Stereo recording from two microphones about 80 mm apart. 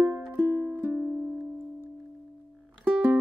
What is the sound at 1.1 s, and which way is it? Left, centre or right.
Music, centre.